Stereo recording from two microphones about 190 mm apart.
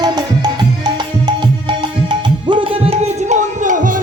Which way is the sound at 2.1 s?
25° right (ahead or behind).